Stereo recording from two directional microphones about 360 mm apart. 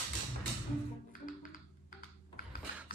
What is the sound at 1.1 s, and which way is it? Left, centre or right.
Music, left.